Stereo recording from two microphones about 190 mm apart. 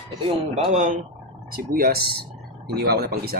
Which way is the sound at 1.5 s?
50° right (ahead or behind).